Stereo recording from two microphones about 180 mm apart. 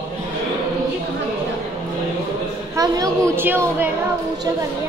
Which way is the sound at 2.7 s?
20° right (ahead or behind).